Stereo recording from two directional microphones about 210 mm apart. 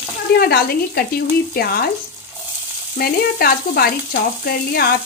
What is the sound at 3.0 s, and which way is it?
Frying, 45° left (ahead or behind).